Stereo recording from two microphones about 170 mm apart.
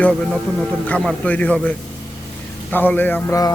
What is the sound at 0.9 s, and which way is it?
Speech, 5° left (ahead or behind).